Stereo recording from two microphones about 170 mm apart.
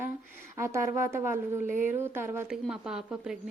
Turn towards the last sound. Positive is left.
turn(degrees=-5)  # may be behind; listen again after turning